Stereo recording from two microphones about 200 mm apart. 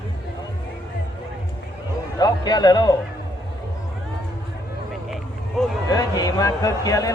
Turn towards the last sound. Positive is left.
turn(degrees=15)  # may be behind; listen again after turning